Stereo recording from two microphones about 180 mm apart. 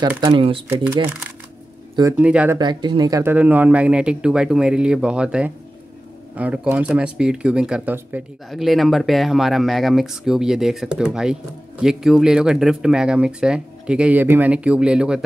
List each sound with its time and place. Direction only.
0.1 s speech: 15° right (ahead or behind)
0.4 s speech: 30° right (ahead or behind)
2.1 s speech: 10° right (ahead or behind)
2.6 s speech: 25° right (ahead or behind); by 15.2 s 5° right (ahead or behind)